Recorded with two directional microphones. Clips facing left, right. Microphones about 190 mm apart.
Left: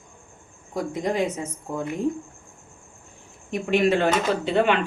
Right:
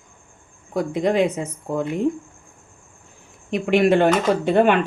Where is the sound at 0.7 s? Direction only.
65° right (ahead or behind).